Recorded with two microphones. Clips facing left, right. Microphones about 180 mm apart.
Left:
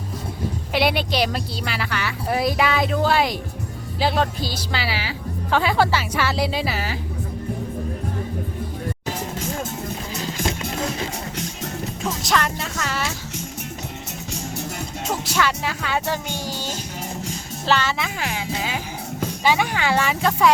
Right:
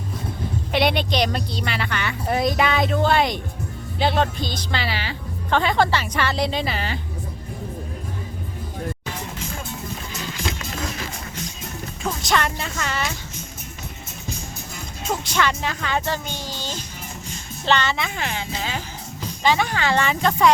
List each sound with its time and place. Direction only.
0.7 s speech: 5° left (ahead or behind)
10.2 s music: 35° left (ahead or behind)
12.0 s speech: centre (ahead or behind)
15.1 s speech: 5° left (ahead or behind)